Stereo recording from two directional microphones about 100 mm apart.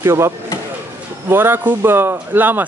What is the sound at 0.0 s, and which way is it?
Speech, 25° right (ahead or behind).